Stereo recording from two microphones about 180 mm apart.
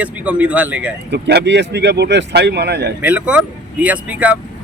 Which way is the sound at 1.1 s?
70° right (ahead or behind).